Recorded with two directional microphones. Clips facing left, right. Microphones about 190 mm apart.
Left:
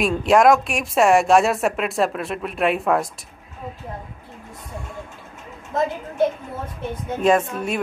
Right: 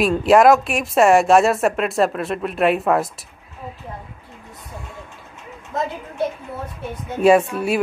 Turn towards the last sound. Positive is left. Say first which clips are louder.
# right 4 dB
turn(degrees=-10)  # may be behind; listen again after turning